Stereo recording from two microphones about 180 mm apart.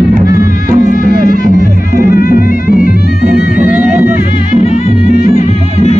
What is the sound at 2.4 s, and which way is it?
Music, 50° left (ahead or behind).